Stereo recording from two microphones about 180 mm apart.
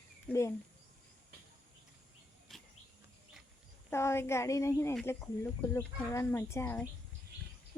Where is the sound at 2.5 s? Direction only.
Centre (ahead or behind).